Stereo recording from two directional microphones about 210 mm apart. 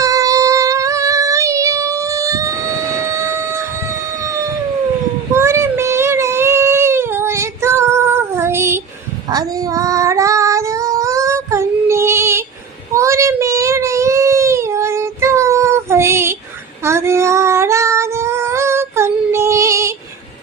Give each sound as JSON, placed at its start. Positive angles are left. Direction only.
{"t": 0.0, "sound": "music", "side_deg": -15}
{"t": 5.3, "sound": "a sound", "side_deg": -10}
{"t": 9.3, "sound": "child singing", "side_deg": -15}
{"t": 12.9, "sound": "baby cry", "side_deg": -15}
{"t": 16.8, "sound": "female singing", "side_deg": -10}